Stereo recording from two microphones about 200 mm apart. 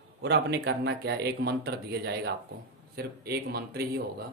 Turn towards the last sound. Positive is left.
turn(degrees=-50)  # may be behind; listen again after turning